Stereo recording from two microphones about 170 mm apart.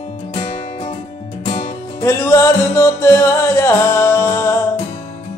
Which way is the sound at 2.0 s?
15° left (ahead or behind).